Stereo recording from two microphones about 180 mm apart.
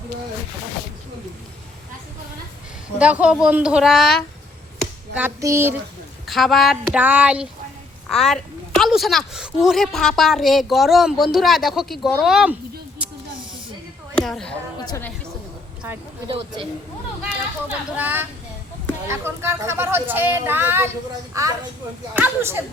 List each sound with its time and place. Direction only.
3.0 s a woman's voice: 5° right (ahead or behind)
5.1 s speech: 15° right (ahead or behind)
6.2 s a woman's voice: centre (ahead or behind)
14.2 s speech: 5° left (ahead or behind)
14.8 s a woman's voice: 15° left (ahead or behind)
16.3 s speech: 30° right (ahead or behind)
17.7 s speech: 10° right (ahead or behind)